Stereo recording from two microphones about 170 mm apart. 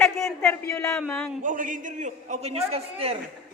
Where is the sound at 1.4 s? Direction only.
50° right (ahead or behind).